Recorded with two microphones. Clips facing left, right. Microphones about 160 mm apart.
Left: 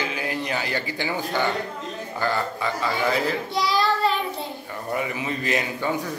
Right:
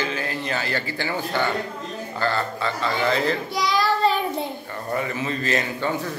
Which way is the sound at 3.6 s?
5° left (ahead or behind).